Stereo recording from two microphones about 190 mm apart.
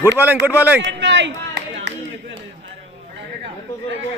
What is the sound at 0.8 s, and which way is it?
Speech, 70° right (ahead or behind).